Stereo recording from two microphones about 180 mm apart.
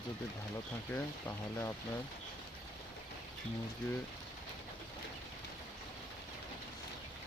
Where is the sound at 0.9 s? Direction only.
10° left (ahead or behind).